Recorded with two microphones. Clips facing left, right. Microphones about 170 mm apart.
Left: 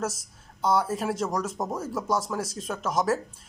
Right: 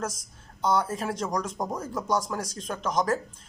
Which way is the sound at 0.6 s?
5° left (ahead or behind).